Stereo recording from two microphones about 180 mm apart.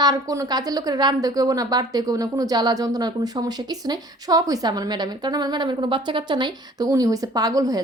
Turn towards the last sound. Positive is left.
turn(degrees=-20)  # may be behind; listen again after turning